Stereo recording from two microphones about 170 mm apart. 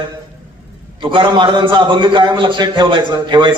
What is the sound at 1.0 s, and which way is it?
A man's voice, 30° right (ahead or behind).